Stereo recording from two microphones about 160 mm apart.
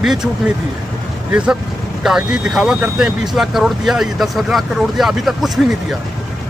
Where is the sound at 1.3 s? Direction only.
5° right (ahead or behind).